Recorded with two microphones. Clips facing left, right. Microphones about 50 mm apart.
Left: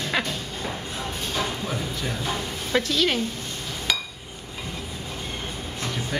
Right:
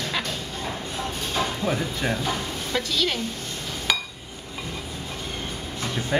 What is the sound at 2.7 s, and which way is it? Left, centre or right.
Speech, centre.